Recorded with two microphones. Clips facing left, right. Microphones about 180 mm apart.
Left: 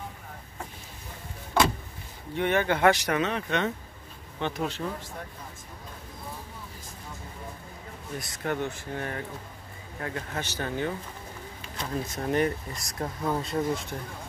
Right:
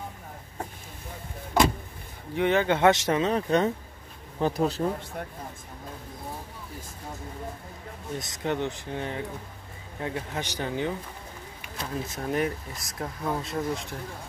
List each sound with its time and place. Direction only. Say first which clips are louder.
2.3 s speech: right 2 dB; 15° right (ahead or behind); by 4.9 s 35° right (ahead or behind)
8.2 s speech: right 1 dB; 20° right (ahead or behind)
11.8 s speech: left 1 dB; centre (ahead or behind)